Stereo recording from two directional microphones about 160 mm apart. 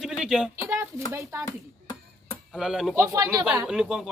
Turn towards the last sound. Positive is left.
turn(degrees=-5)  # may be behind; listen again after turning